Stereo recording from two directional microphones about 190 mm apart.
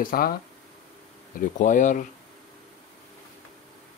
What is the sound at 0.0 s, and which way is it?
Speech, 50° left (ahead or behind).